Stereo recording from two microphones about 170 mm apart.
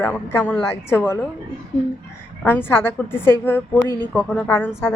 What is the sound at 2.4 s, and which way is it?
A woman's voice, 10° left (ahead or behind).